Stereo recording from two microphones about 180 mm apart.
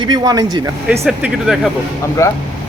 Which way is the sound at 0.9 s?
10° right (ahead or behind).